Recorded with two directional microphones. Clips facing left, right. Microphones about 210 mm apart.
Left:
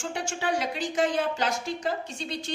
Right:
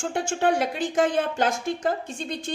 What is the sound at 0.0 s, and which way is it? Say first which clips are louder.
Speech: right 7 dB; 50° right (ahead or behind).